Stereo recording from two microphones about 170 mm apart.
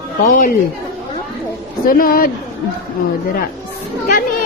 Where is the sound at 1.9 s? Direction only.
55° left (ahead or behind).